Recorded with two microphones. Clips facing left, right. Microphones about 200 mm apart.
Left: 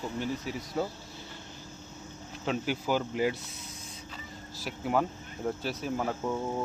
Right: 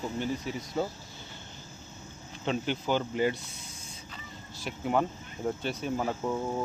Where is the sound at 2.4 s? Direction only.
5° left (ahead or behind).